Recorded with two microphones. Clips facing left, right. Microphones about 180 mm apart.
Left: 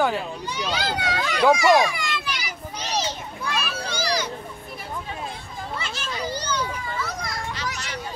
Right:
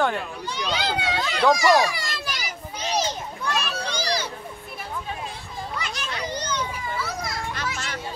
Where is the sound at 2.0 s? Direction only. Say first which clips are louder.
Left 2 dB; 40° right (ahead or behind).